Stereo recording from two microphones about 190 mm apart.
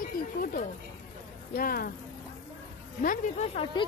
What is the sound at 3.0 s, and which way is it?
Speech, 35° left (ahead or behind).